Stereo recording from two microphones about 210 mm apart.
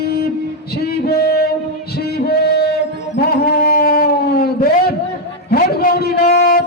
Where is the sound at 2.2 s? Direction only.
50° left (ahead or behind).